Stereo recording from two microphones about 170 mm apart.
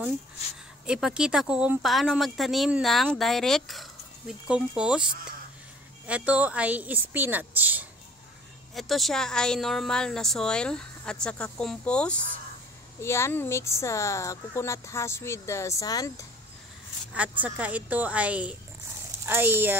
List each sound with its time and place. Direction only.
0.8 s speech: 5° right (ahead or behind)
6.0 s a woman's voice: 5° right (ahead or behind)
8.7 s speech: centre (ahead or behind); by 16.3 s 20° left (ahead or behind)
17.1 s a woman's voice: 10° right (ahead or behind)